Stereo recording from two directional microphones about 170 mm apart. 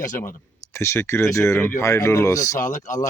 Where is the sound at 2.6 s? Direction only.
50° left (ahead or behind).